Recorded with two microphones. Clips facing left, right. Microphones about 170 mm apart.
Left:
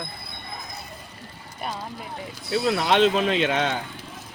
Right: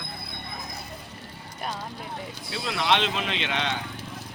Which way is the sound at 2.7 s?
45° left (ahead or behind).